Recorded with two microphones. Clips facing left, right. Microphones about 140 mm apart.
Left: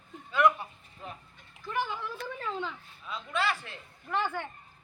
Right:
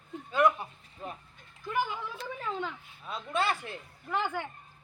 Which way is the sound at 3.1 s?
50° right (ahead or behind).